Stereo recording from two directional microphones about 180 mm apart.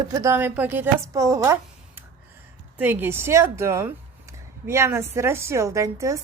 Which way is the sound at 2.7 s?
10° right (ahead or behind).